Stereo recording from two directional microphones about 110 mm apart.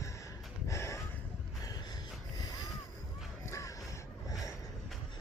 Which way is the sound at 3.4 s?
25° left (ahead or behind).